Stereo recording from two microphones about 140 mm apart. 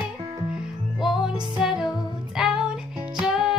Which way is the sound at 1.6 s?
5° right (ahead or behind).